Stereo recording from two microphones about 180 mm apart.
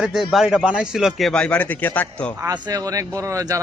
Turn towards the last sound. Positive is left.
turn(degrees=-15)  # may be behind; listen again after turning